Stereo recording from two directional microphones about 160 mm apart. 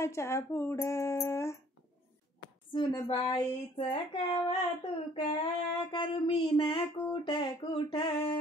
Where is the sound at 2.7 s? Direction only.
30° left (ahead or behind).